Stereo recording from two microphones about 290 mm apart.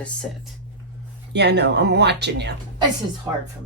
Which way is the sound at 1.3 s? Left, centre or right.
Right.